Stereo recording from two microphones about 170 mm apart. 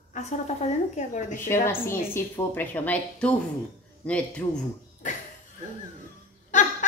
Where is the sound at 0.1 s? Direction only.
45° left (ahead or behind).